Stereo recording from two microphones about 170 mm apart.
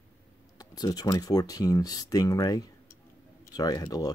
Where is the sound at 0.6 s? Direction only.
25° left (ahead or behind).